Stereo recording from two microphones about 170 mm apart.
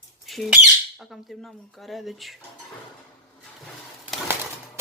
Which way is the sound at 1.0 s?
Centre (ahead or behind).